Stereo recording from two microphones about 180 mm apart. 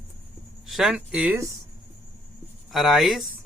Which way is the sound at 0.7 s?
Centre (ahead or behind).